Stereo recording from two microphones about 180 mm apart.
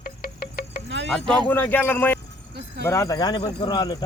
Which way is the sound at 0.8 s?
90° right.